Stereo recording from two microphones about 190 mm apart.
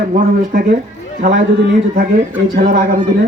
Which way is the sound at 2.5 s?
50° right (ahead or behind).